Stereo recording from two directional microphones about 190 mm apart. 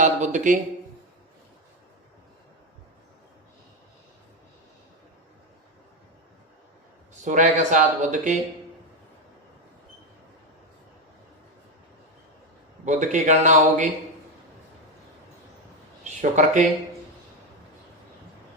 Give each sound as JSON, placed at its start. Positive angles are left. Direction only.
{"t": 0.0, "sound": "a man's voice", "side_deg": -40}
{"t": 7.3, "sound": "a man's voice", "side_deg": -40}
{"t": 12.8, "sound": "a man's voice", "side_deg": -40}
{"t": 16.0, "sound": "speech", "side_deg": -40}